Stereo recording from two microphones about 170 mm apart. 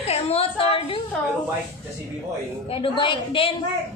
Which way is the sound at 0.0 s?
35° left (ahead or behind).